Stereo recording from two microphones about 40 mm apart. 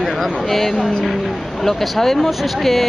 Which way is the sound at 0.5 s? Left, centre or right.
Centre.